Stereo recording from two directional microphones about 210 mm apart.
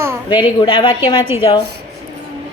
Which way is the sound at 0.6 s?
20° left (ahead or behind).